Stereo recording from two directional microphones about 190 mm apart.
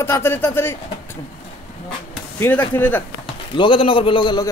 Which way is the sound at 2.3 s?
10° left (ahead or behind).